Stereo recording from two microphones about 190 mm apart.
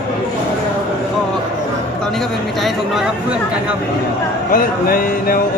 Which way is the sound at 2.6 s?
Centre (ahead or behind).